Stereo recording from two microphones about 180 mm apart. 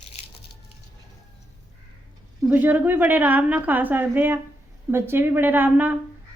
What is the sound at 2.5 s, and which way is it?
A woman's voice, 10° right (ahead or behind).